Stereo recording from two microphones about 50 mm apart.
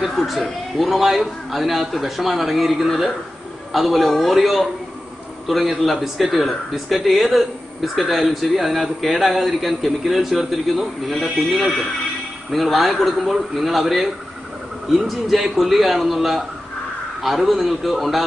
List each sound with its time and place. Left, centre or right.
0.0 s speech: centre
5.8 s speech: centre
12.4 s speech: centre